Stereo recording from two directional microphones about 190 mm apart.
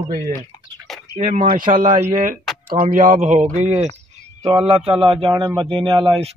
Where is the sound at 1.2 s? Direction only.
40° right (ahead or behind).